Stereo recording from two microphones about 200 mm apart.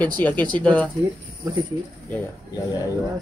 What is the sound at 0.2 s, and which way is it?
Speech, 10° left (ahead or behind).